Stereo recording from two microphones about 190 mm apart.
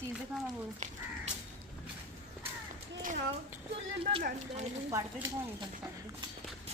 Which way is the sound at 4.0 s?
30° right (ahead or behind).